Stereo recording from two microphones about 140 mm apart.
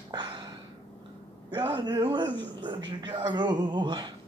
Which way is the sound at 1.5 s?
35° right (ahead or behind).